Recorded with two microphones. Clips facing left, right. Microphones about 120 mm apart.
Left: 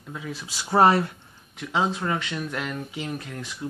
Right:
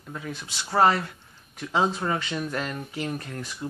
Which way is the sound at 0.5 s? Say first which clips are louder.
Left 3 dB; 20° left (ahead or behind).